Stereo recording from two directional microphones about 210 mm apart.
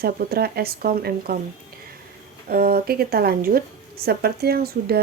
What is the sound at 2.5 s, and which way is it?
A woman's voice, 45° right (ahead or behind).